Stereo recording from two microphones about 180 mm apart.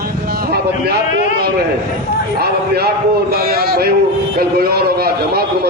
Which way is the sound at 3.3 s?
55° right (ahead or behind).